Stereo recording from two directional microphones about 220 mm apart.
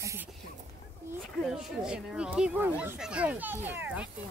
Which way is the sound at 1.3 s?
Centre (ahead or behind).